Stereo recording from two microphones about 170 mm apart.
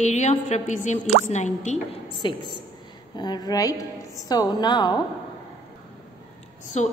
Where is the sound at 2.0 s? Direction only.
30° left (ahead or behind).